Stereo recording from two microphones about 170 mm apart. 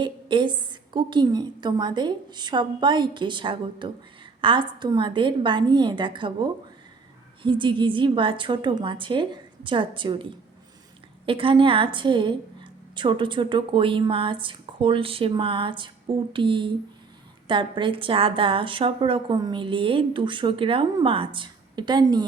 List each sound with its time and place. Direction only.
0.0 s a woman's voice: 30° right (ahead or behind)